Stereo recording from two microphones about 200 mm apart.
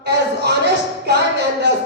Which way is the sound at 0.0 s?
55° right (ahead or behind).